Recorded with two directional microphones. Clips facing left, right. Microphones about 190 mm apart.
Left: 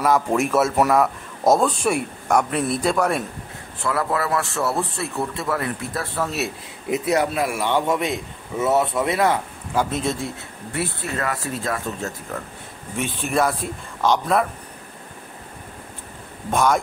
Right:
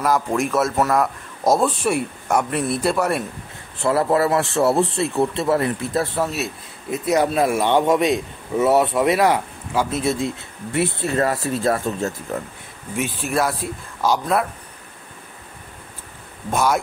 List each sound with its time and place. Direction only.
0.0 s speech: centre (ahead or behind)
3.8 s speech: 30° right (ahead or behind)
9.8 s speech: 5° right (ahead or behind)
10.7 s speech: 25° right (ahead or behind)
12.9 s speech: 5° right (ahead or behind)
16.4 s speech: 5° right (ahead or behind)